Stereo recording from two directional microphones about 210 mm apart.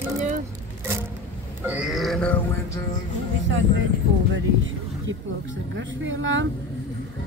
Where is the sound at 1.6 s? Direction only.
5° right (ahead or behind).